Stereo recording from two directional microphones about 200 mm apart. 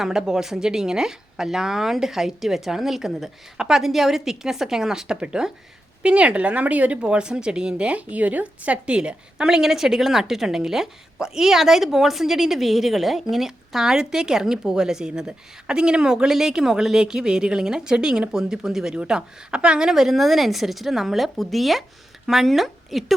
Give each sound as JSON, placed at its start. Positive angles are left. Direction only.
{"t": 0.0, "sound": "a woman's voice", "side_deg": 0}